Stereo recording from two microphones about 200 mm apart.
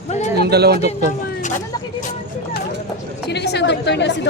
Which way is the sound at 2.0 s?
40° left (ahead or behind).